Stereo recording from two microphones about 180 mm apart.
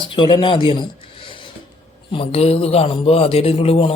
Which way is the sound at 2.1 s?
35° left (ahead or behind).